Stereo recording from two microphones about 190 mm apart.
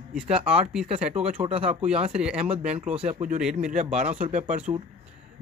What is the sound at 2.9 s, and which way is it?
Speech, 35° right (ahead or behind).